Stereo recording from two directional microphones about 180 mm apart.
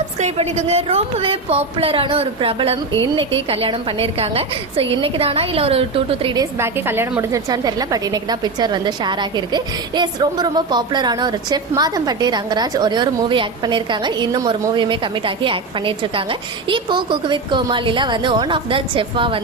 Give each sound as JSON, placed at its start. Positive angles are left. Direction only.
{"t": 0.2, "sound": "a woman's voice", "side_deg": -40}
{"t": 6.4, "sound": "a woman's voice", "side_deg": -15}